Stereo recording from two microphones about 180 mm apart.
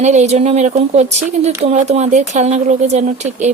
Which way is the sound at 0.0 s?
40° right (ahead or behind).